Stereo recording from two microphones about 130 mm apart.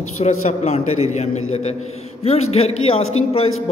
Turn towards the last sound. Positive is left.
turn(degrees=50)  # may be behind; listen again after turning